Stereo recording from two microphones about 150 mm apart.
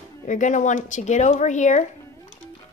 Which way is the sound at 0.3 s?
55° left (ahead or behind).